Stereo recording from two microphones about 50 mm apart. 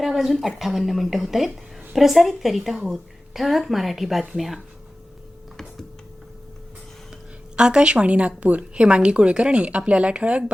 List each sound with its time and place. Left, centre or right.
0.0 s a woman's voice: centre
7.5 s speech: centre